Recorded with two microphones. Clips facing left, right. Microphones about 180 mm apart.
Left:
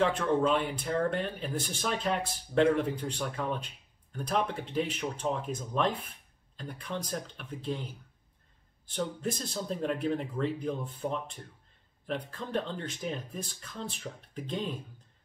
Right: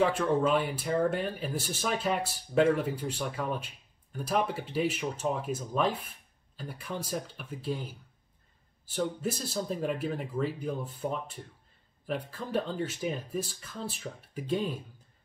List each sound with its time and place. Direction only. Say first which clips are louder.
0.0 s speech: right 1 dB; 5° right (ahead or behind)